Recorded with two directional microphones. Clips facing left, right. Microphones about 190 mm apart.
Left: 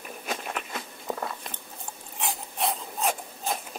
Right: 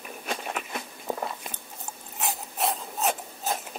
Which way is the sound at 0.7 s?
20° right (ahead or behind).